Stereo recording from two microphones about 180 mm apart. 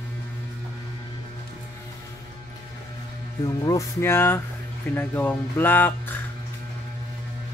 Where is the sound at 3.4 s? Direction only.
20° left (ahead or behind).